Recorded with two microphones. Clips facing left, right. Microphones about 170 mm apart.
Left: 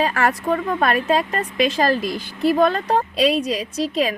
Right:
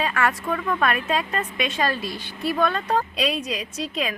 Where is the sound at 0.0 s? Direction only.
40° left (ahead or behind).